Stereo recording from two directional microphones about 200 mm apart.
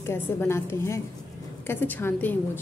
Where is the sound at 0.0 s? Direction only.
10° left (ahead or behind).